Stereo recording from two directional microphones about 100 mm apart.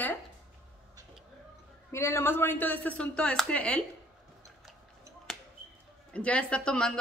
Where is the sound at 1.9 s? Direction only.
30° left (ahead or behind); by 3.8 s 10° left (ahead or behind).